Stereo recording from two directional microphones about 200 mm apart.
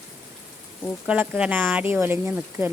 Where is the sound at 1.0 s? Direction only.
5° right (ahead or behind).